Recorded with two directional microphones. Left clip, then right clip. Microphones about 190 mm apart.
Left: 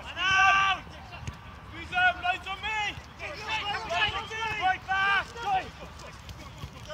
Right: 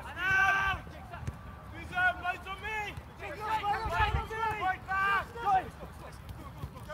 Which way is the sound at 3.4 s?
40° right (ahead or behind).